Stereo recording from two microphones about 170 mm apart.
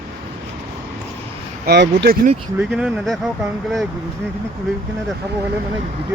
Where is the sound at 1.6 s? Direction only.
80° right.